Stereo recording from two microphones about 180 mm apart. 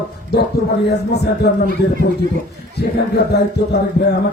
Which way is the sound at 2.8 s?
65° left (ahead or behind).